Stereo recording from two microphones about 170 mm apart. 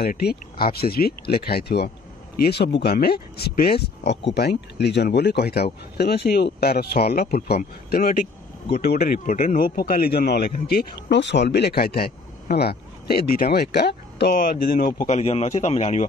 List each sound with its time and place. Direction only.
0.0 s a man's voice: 65° left (ahead or behind)
15.0 s a man's voice: 40° left (ahead or behind)